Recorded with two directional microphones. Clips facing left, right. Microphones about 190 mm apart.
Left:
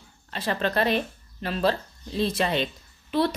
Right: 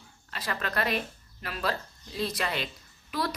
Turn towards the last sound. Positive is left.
turn(degrees=25)  # may be behind; listen again after turning